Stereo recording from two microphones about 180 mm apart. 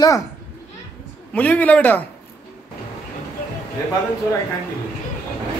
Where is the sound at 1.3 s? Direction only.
10° left (ahead or behind).